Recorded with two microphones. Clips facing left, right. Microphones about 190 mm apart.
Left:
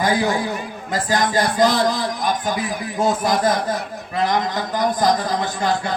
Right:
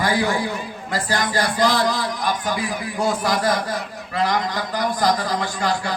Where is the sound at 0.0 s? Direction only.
20° left (ahead or behind).